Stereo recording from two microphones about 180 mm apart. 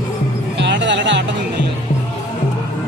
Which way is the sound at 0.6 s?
85° right.